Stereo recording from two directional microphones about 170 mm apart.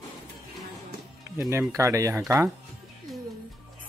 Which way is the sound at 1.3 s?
15° right (ahead or behind).